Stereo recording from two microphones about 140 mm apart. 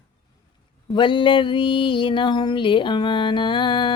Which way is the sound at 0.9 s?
35° left (ahead or behind).